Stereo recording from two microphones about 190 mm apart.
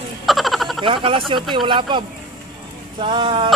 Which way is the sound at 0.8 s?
25° right (ahead or behind).